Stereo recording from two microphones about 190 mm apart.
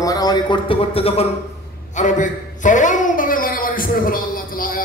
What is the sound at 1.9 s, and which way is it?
A man's voice, 40° left (ahead or behind).